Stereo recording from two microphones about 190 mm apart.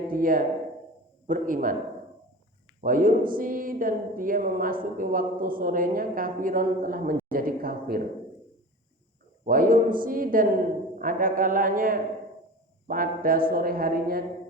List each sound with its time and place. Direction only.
0.1 s speech: 45° right (ahead or behind)
2.8 s speech: 45° right (ahead or behind)
9.4 s speech: 45° right (ahead or behind)